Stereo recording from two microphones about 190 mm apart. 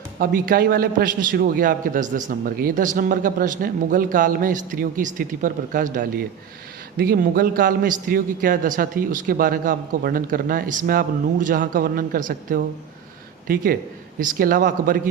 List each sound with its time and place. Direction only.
0.2 s a man's voice: 45° right (ahead or behind)
14.2 s a man's voice: 50° right (ahead or behind)